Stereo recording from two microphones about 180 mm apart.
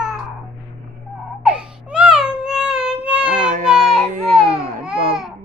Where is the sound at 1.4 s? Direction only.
5° right (ahead or behind).